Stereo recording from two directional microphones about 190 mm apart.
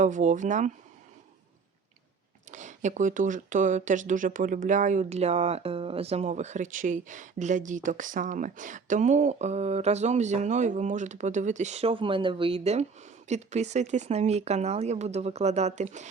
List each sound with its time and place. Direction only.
0.0 s speech: 40° right (ahead or behind)
2.5 s speech: 40° right (ahead or behind)